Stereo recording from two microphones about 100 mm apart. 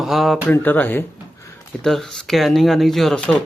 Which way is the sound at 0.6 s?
20° left (ahead or behind).